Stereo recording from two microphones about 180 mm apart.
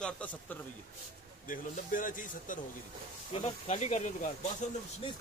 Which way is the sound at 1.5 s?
45° left (ahead or behind).